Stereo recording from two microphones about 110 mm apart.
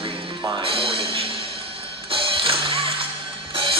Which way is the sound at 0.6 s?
55° right (ahead or behind).